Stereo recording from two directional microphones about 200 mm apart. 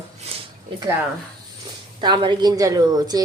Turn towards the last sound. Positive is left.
turn(degrees=-20)  # may be behind; listen again after turning